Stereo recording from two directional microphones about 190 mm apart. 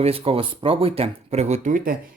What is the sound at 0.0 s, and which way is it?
Speech, 30° right (ahead or behind).